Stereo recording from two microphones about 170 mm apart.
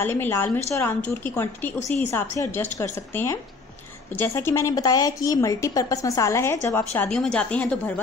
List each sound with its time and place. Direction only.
0.0 s a woman's voice: 15° left (ahead or behind)